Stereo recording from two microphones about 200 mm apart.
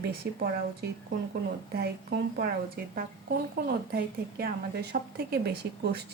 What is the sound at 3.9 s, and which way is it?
A woman's voice, 50° right (ahead or behind).